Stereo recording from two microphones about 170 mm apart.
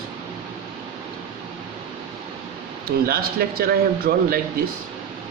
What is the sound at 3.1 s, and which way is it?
A man's voice, 65° right (ahead or behind).